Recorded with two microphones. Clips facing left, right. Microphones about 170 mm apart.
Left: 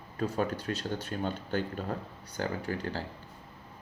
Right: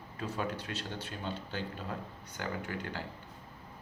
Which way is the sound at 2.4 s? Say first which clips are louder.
Left 5 dB; 35° left (ahead or behind).